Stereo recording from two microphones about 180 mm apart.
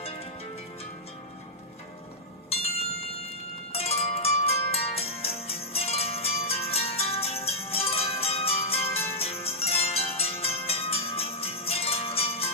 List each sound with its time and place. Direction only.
0.0 s music: 35° left (ahead or behind)
2.5 s music: 35° left (ahead or behind)
3.7 s zither: 35° left (ahead or behind)
9.2 s music: 35° left (ahead or behind)